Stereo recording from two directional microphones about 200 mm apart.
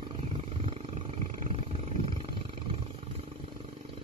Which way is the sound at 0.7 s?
30° right (ahead or behind).